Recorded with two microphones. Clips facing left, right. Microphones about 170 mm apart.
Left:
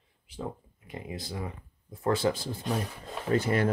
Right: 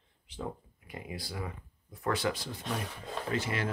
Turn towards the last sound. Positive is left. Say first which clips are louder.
# left 8 dB
turn(degrees=50)  # may be behind; listen again after turning